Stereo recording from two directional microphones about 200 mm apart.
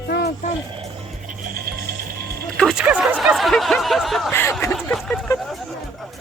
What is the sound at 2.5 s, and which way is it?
Speech, centre (ahead or behind).